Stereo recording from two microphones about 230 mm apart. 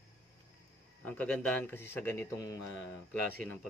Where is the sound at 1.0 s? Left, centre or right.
Centre.